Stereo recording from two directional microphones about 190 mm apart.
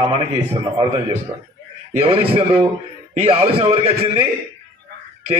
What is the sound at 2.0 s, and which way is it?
A man's voice, 30° right (ahead or behind).